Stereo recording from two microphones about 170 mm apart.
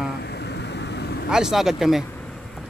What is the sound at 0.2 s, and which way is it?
Vehicle, 75° left (ahead or behind).